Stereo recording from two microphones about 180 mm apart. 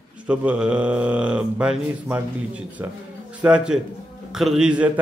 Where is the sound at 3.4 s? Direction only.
5° right (ahead or behind).